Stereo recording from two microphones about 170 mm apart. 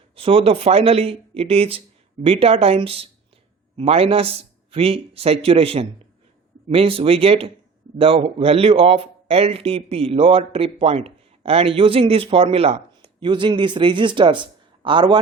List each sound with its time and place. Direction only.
0.2 s a man's voice: 35° right (ahead or behind)